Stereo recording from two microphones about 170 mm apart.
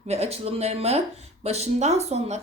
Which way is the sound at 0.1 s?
35° right (ahead or behind).